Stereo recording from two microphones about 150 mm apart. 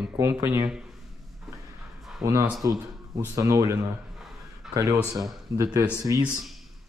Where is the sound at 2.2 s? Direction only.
20° right (ahead or behind).